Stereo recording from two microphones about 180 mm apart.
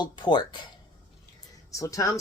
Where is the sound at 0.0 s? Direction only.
25° left (ahead or behind).